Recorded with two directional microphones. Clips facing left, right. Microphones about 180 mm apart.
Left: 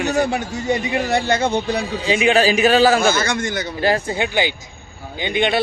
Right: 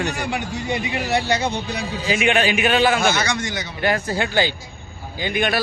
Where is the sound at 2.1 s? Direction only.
30° left (ahead or behind); by 3.7 s 50° left (ahead or behind).